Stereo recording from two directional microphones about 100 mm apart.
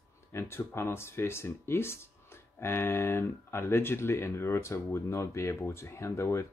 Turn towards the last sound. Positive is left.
turn(degrees=30)  # may be behind; listen again after turning